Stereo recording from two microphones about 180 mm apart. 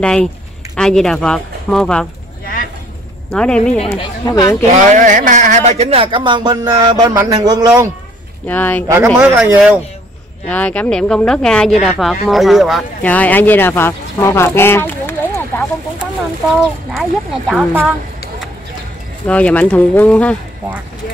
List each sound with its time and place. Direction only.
0.0 s speech: 5° left (ahead or behind)
2.4 s a sound: 55° left (ahead or behind)
3.3 s speech: 5° left (ahead or behind)
3.9 s speech: 20° left (ahead or behind)
4.7 s a man's voice: 45° right (ahead or behind); by 7.7 s 20° right (ahead or behind)
8.5 s speech: 10° left (ahead or behind)
8.9 s speech: 15° right (ahead or behind)
10.5 s speech: 10° left (ahead or behind)
16.9 s speech: centre (ahead or behind)
19.2 s speech: 5° left (ahead or behind)